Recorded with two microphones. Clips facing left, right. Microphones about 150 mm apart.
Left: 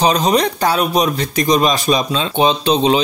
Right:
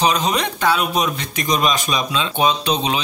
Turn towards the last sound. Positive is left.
turn(degrees=30)  # may be behind; listen again after turning